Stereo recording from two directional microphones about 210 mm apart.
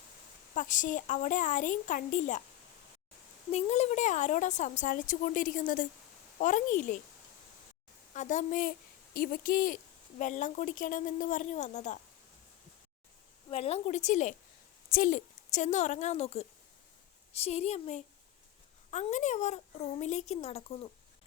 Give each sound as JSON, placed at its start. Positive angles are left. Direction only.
{"t": 0.5, "sound": "a woman's voice", "side_deg": 40}
{"t": 3.5, "sound": "a woman's voice", "side_deg": 30}
{"t": 8.1, "sound": "a woman's voice", "side_deg": 35}
{"t": 13.5, "sound": "a woman's voice", "side_deg": 30}